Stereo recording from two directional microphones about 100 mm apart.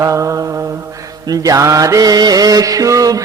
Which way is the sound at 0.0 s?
30° right (ahead or behind).